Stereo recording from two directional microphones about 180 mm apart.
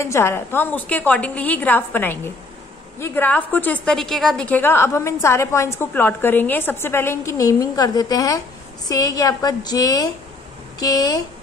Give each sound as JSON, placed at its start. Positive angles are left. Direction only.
{"t": 0.0, "sound": "a woman's voice", "side_deg": 15}